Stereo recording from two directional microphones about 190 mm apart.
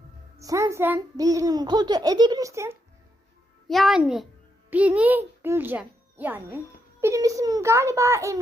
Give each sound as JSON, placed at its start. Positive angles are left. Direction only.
{"t": 0.3, "sound": "a child's voice", "side_deg": -15}
{"t": 3.7, "sound": "a child's voice", "side_deg": 0}